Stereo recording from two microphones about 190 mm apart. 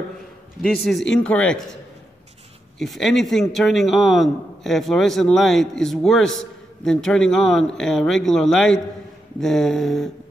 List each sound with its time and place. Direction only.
0.8 s a man's voice: 5° left (ahead or behind)
2.8 s a man's voice: centre (ahead or behind)